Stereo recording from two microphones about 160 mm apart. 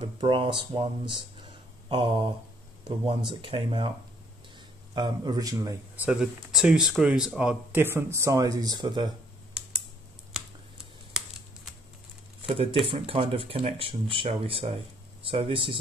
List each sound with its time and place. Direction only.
0.0 s speech: 30° right (ahead or behind)
4.9 s a man's voice: 25° right (ahead or behind)
5.9 s speech: 5° right (ahead or behind); by 9.1 s 25° right (ahead or behind)
11.1 s typing: 5° right (ahead or behind)
12.4 s speech: 35° right (ahead or behind)